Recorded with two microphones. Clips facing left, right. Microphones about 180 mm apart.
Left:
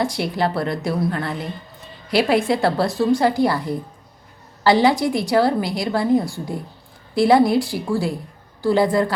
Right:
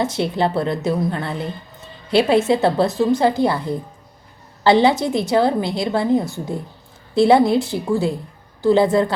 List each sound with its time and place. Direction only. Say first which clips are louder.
0.0 s a woman's voice: right 2 dB; 25° right (ahead or behind)